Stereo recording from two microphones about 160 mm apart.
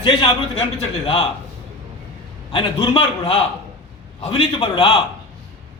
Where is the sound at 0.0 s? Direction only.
30° left (ahead or behind).